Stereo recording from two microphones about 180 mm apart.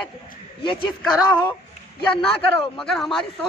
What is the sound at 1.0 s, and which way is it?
Speech, 10° left (ahead or behind).